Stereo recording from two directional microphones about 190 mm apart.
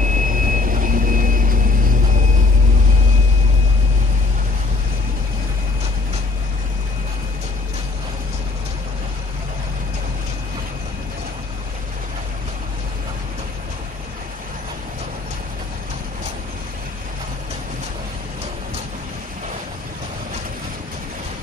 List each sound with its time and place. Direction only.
0.0 s vehicle: 45° right (ahead or behind)